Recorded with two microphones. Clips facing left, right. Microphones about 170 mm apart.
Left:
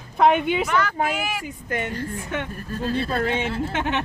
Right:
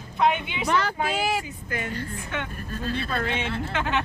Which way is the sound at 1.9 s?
40° left (ahead or behind).